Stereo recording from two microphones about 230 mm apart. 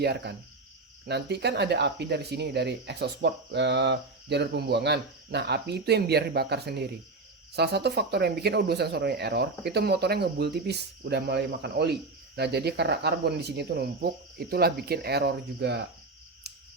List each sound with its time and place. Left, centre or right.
0.0 s speech: right